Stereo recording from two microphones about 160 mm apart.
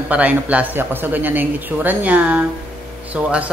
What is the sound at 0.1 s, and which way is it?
Speech, 10° right (ahead or behind).